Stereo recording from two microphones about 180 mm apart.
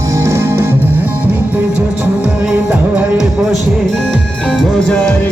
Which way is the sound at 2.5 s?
5° right (ahead or behind).